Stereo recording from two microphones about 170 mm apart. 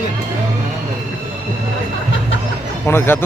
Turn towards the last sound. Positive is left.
turn(degrees=15)  # may be behind; listen again after turning